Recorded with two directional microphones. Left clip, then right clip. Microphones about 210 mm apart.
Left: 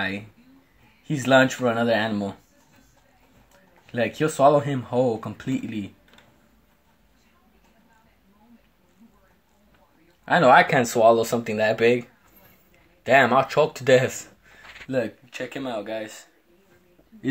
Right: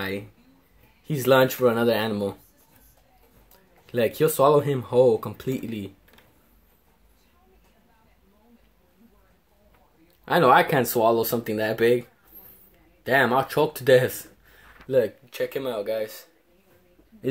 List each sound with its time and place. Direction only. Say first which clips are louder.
1.0 s speech: left 1 dB; 30° right (ahead or behind)
3.8 s speech: right 2 dB; 30° right (ahead or behind)
10.2 s speech: left 2 dB; 30° right (ahead or behind)
13.1 s speech: left 3 dB; 20° right (ahead or behind)